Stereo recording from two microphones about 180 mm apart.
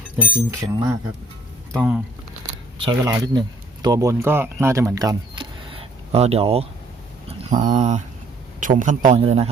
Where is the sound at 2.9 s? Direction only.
20° right (ahead or behind).